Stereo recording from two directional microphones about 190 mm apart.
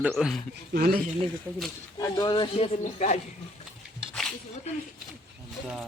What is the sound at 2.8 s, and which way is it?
Speech, 40° left (ahead or behind).